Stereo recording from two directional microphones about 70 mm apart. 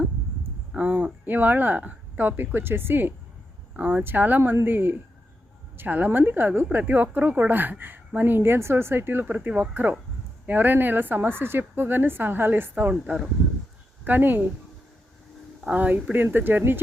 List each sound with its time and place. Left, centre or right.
0.7 s a woman's voice: right
9.2 s a woman's voice: right
14.0 s a woman's voice: right
15.7 s a woman's voice: right